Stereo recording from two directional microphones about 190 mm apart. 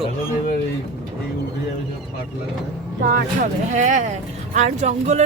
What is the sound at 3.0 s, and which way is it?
Speech, 50° right (ahead or behind).